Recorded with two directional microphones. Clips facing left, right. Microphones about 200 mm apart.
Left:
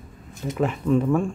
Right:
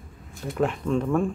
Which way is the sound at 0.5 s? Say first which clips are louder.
Left 3 dB; centre (ahead or behind).